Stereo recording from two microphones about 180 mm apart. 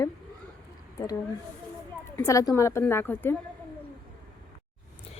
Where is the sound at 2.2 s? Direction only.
20° left (ahead or behind).